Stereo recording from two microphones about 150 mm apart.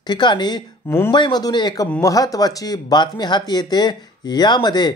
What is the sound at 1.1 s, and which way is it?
A man's voice, 30° left (ahead or behind).